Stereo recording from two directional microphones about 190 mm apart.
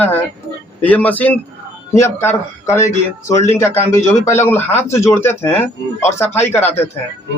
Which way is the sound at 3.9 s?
15° left (ahead or behind).